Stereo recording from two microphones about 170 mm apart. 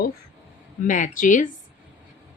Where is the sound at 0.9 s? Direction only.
50° left (ahead or behind).